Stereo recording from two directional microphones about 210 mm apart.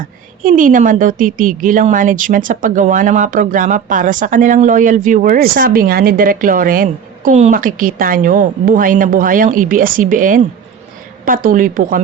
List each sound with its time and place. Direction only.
0.4 s a woman's voice: 40° right (ahead or behind)